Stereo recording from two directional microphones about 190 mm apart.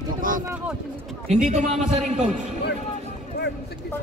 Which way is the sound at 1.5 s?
35° right (ahead or behind).